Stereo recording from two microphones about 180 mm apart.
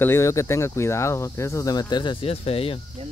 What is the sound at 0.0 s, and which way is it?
Speech, 15° left (ahead or behind).